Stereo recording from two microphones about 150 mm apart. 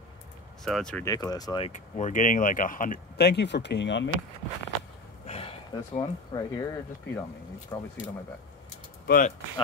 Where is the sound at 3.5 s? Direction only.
90° left.